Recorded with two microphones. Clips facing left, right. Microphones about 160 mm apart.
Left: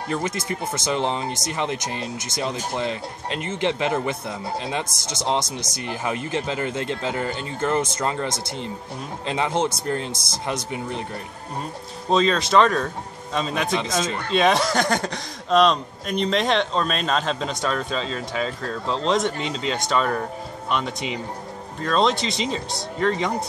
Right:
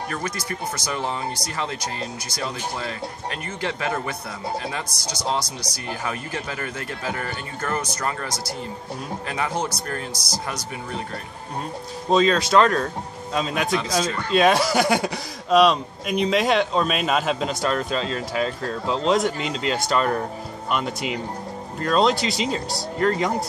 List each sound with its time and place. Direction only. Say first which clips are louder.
0.1 s speech: left 3 dB; 25° left (ahead or behind)
12.1 s speech: right 1 dB; centre (ahead or behind)